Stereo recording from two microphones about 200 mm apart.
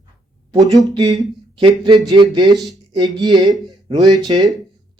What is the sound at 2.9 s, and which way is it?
Speech, 20° right (ahead or behind).